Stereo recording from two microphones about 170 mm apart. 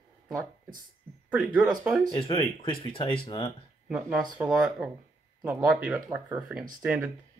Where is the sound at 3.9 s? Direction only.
5° right (ahead or behind).